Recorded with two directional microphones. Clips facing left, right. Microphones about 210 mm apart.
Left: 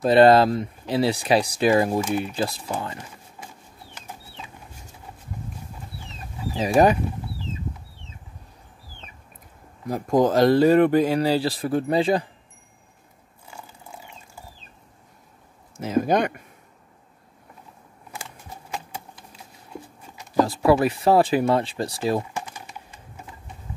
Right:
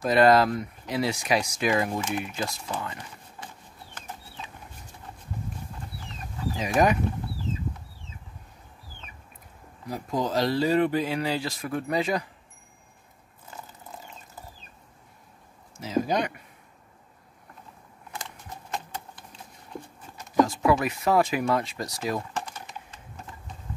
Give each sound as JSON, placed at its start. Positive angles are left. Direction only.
{"t": 0.0, "sound": "speech", "side_deg": 30}
{"t": 6.5, "sound": "speech", "side_deg": 30}
{"t": 9.8, "sound": "speech", "side_deg": 50}
{"t": 13.5, "sound": "dog", "side_deg": 10}
{"t": 15.8, "sound": "speech", "side_deg": 55}
{"t": 18.1, "sound": "a sound", "side_deg": 10}
{"t": 20.3, "sound": "speech", "side_deg": 35}
{"t": 22.3, "sound": "typing", "side_deg": 10}